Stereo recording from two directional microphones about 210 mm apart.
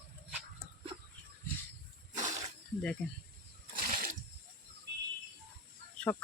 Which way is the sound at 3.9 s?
45° right (ahead or behind).